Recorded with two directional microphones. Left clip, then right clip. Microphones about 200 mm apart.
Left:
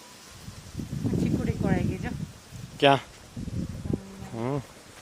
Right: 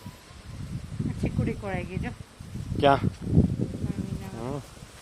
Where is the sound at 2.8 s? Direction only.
5° left (ahead or behind).